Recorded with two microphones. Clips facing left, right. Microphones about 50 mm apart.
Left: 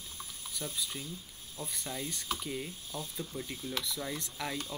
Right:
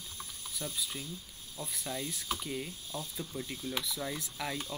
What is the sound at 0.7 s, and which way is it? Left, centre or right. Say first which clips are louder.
Mechanisms: even; centre.